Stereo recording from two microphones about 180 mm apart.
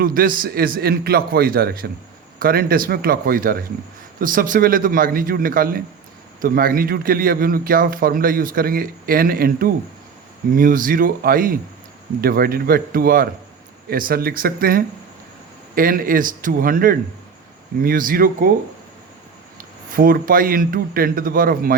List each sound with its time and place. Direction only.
0.0 s a man's voice: 50° right (ahead or behind)
19.5 s speech: 50° right (ahead or behind)